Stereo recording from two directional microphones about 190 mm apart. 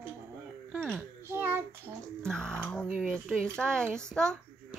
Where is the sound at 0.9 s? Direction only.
10° right (ahead or behind).